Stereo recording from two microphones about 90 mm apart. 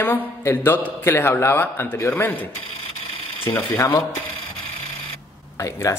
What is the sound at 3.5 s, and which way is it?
Speech, 25° left (ahead or behind).